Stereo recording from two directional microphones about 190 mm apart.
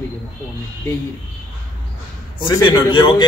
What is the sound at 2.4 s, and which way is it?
Speech, 25° left (ahead or behind).